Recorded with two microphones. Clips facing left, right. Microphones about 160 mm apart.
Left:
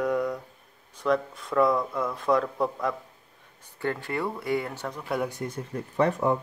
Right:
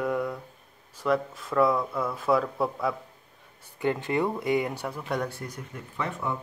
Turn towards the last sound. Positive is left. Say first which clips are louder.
# left 8 dB
turn(degrees=40)  # may be behind; listen again after turning